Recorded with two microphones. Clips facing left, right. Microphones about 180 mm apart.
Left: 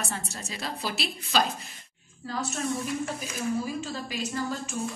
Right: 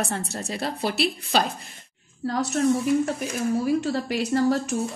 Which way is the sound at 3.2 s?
70° right (ahead or behind).